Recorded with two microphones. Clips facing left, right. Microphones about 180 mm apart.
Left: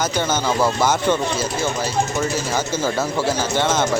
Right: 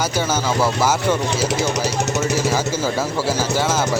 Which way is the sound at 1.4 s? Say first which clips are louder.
Right 2 dB; 80° right.